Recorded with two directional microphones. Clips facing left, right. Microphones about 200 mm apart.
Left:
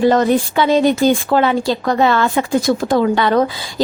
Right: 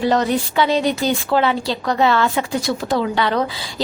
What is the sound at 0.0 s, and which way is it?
A woman's voice, 50° left (ahead or behind).